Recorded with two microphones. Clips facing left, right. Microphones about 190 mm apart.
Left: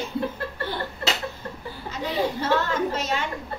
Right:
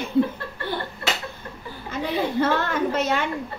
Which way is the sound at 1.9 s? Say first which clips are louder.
Right 2 dB; 55° right (ahead or behind).